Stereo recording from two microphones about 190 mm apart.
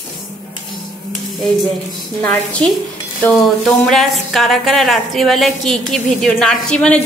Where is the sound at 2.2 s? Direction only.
5° left (ahead or behind).